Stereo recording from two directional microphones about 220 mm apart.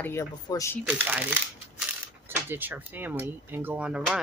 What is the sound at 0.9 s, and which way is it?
Speech, 10° right (ahead or behind).